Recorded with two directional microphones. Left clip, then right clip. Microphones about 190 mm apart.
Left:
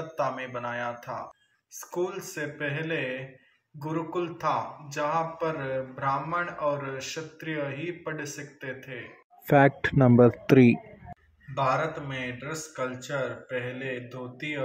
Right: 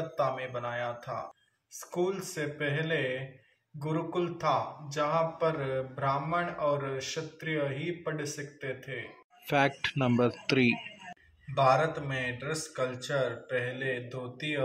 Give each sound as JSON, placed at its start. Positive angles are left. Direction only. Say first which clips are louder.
{"t": 0.2, "sound": "a man's voice", "louder": "left 2 dB", "side_deg": -10}
{"t": 9.5, "sound": "speech", "louder": "left 6 dB", "side_deg": 35}
{"t": 11.5, "sound": "a man's voice", "louder": "right 1 dB", "side_deg": -10}